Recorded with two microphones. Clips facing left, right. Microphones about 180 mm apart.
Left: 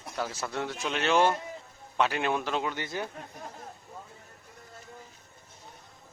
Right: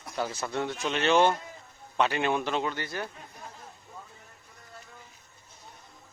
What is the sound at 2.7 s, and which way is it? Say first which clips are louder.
Speech: left 1 dB; 20° left (ahead or behind).